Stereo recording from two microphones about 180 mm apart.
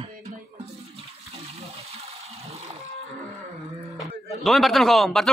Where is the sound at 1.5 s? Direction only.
35° right (ahead or behind).